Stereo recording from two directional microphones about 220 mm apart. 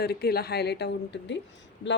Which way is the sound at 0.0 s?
45° left (ahead or behind).